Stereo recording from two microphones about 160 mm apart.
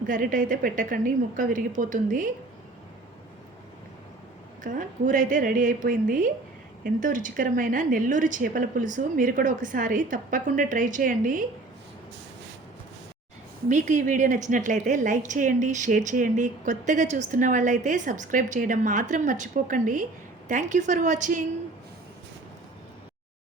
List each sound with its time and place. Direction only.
0.1 s a woman's voice: 60° right (ahead or behind)
4.6 s a woman's voice: 55° right (ahead or behind)
13.7 s a woman's voice: 50° right (ahead or behind)